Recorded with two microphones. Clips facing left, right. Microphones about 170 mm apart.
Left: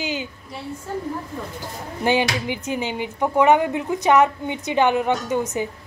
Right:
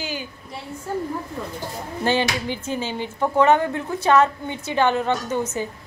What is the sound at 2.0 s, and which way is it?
Speech, 15° left (ahead or behind).